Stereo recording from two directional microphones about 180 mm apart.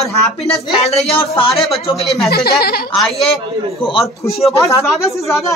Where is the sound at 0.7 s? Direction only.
30° left (ahead or behind).